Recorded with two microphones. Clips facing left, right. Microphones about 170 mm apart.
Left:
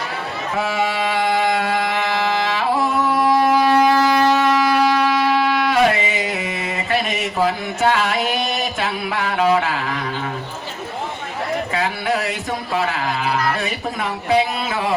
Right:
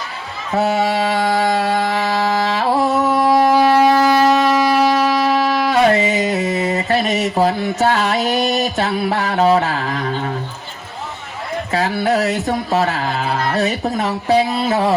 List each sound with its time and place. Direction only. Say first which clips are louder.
0.5 s music: right 5 dB; 40° right (ahead or behind)
3.2 s wind instrument: right 3 dB; 30° right (ahead or behind)
11.7 s speech: right 8 dB; 40° right (ahead or behind)
13.2 s carnatic music: left 1 dB; 30° right (ahead or behind)
13.6 s speech: right 6 dB; 40° right (ahead or behind)